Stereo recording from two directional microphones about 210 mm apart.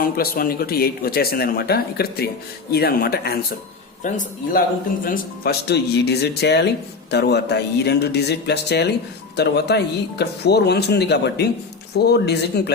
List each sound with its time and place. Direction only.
0.0 s a man's voice: 45° left (ahead or behind)